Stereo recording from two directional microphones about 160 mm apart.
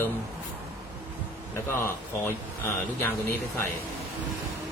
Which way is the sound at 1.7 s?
15° left (ahead or behind).